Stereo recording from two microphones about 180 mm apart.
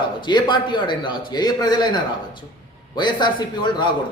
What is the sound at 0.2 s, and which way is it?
A man's voice, 25° left (ahead or behind).